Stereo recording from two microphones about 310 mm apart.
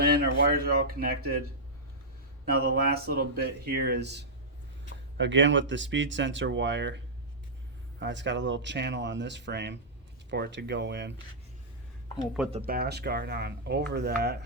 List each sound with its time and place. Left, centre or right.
0.0 s speech: right
2.5 s speech: right
12.5 s speech: right